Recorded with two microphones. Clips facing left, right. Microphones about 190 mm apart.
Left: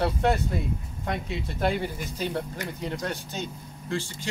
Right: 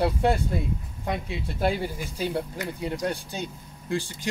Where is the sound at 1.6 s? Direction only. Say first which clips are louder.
Right 1 dB; 10° right (ahead or behind).